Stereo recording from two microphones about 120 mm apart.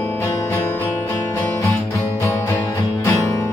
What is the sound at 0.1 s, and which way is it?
Music, 15° left (ahead or behind).